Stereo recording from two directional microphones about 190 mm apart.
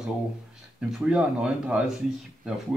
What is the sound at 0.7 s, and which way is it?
Speech, 5° right (ahead or behind).